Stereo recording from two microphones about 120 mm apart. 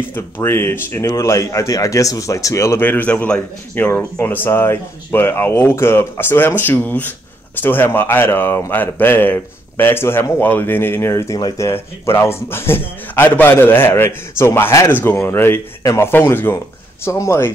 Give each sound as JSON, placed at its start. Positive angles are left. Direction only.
{"t": 0.1, "sound": "speech", "side_deg": 20}
{"t": 11.3, "sound": "speech", "side_deg": 35}
{"t": 11.6, "sound": "speech", "side_deg": 20}